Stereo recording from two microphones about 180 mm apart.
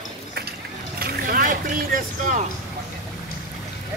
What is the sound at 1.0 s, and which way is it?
Speech, 55° right (ahead or behind).